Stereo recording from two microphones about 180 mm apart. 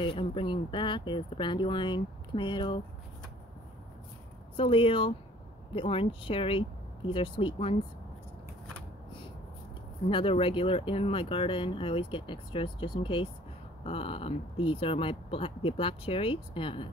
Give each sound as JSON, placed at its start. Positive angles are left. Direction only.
{"t": 0.0, "sound": "speech", "side_deg": 25}
{"t": 4.6, "sound": "speech", "side_deg": 30}
{"t": 10.0, "sound": "speech", "side_deg": 30}